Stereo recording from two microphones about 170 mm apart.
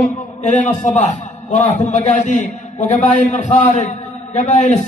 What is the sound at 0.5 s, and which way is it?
A man's voice, 45° left (ahead or behind).